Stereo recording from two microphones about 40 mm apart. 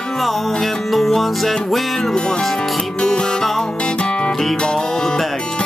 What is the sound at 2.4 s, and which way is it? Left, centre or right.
Speech, centre.